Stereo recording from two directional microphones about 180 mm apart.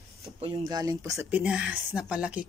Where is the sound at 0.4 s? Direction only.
30° right (ahead or behind).